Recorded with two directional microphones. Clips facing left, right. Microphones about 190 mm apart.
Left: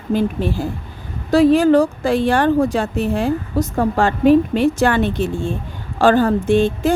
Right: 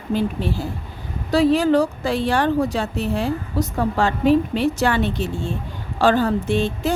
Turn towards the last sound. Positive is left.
turn(degrees=50)  # may be behind; listen again after turning